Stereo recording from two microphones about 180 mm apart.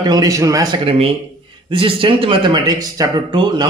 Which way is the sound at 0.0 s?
20° right (ahead or behind).